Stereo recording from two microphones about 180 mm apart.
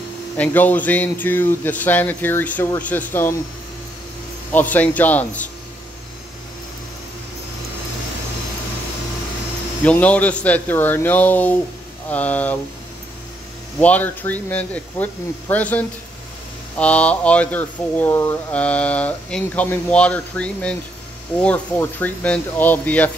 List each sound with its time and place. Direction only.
0.4 s speech: 10° left (ahead or behind)
4.5 s speech: 10° left (ahead or behind)
9.8 s speech: 5° left (ahead or behind)
13.7 s speech: 10° left (ahead or behind)